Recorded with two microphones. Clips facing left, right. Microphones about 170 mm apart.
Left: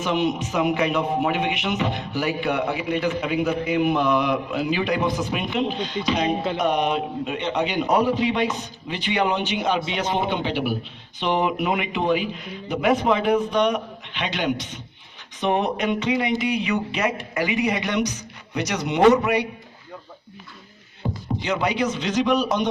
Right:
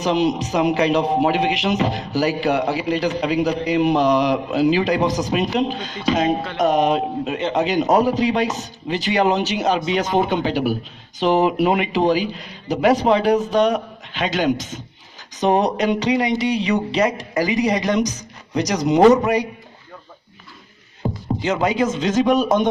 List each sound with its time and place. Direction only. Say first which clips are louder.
0.3 s a man's voice: right 3 dB; 35° right (ahead or behind)
3.2 s a man's voice: right 3 dB; 90° right
5.5 s a man's voice: right 3 dB; 40° right (ahead or behind)
12.8 s a man's voice: right 4 dB; 90° right
13.1 s a man's voice: right 4 dB; 35° right (ahead or behind)
21.0 s a sound: right 5 dB; 40° right (ahead or behind)
22.0 s speech: right 4 dB; 45° right (ahead or behind)